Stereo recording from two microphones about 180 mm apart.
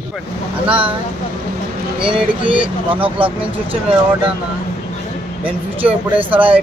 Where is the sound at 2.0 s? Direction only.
30° right (ahead or behind).